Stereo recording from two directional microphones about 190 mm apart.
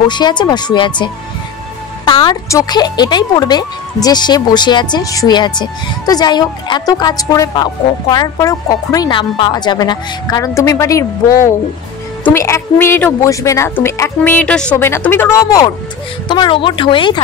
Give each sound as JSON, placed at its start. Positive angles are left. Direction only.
{"t": 0.1, "sound": "a woman's voice", "side_deg": 25}